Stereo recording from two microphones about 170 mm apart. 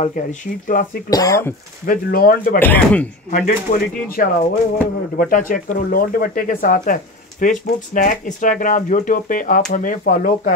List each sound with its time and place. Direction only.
0.0 s speech: 50° left (ahead or behind)
1.1 s speech: 20° left (ahead or behind)
1.9 s speech: 60° left (ahead or behind)
2.6 s speech: 10° left (ahead or behind)
3.3 s speech: 50° left (ahead or behind)